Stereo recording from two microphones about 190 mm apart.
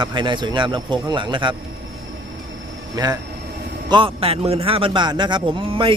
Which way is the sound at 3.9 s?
30° right (ahead or behind).